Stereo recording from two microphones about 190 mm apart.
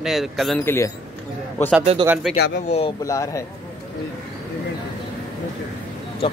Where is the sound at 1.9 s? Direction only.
30° right (ahead or behind).